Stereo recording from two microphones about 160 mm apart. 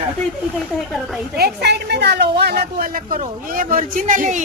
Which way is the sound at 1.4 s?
80° right.